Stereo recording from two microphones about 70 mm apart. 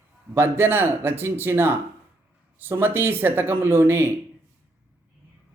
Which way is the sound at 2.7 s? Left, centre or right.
Right.